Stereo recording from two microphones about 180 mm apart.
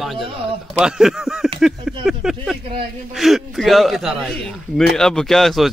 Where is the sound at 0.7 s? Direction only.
5° right (ahead or behind).